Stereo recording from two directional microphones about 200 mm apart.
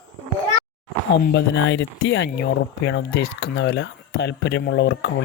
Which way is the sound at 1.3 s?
60° left (ahead or behind).